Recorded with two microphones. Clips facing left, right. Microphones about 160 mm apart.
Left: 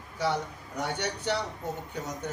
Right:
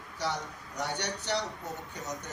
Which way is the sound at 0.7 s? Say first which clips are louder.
Left 3 dB; 55° left (ahead or behind).